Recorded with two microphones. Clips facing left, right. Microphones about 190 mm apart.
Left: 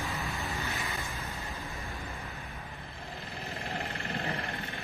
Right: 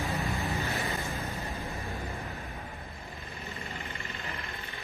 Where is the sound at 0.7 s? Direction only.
35° right (ahead or behind).